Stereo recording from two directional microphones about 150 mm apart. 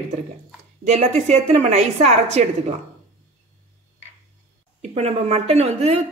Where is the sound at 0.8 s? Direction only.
50° right (ahead or behind).